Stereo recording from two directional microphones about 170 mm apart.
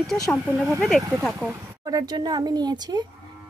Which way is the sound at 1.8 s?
20° right (ahead or behind).